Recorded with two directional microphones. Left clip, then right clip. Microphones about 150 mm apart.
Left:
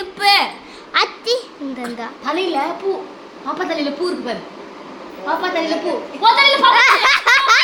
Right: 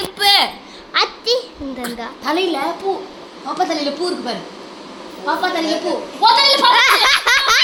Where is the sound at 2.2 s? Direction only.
90° right.